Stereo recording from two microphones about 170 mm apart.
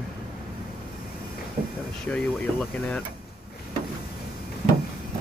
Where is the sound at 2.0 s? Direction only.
5° left (ahead or behind).